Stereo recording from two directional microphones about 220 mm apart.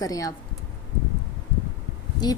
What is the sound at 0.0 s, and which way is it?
Speech, 15° left (ahead or behind).